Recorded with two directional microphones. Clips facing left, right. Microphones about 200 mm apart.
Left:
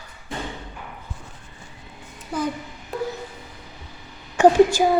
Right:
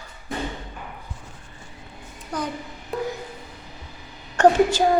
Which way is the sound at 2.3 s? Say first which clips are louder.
Left 3 dB; 5° left (ahead or behind).